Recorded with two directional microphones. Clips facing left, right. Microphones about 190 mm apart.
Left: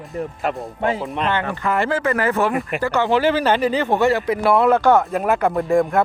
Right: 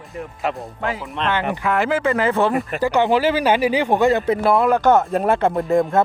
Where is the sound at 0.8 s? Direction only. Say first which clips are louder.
Left 6 dB; 25° left (ahead or behind).